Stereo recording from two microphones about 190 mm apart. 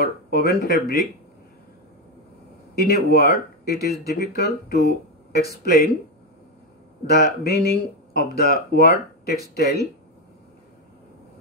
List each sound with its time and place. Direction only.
0.0 s speech: 55° left (ahead or behind)
2.9 s speech: 55° left (ahead or behind)
7.2 s speech: 55° left (ahead or behind)